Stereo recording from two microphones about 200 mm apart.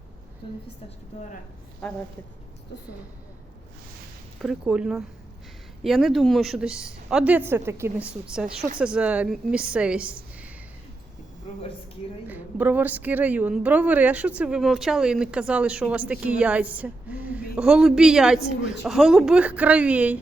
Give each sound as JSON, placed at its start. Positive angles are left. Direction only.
{"t": 4.4, "sound": "speech", "side_deg": -5}
{"t": 11.5, "sound": "speech", "side_deg": 30}
{"t": 12.3, "sound": "a woman's voice", "side_deg": -10}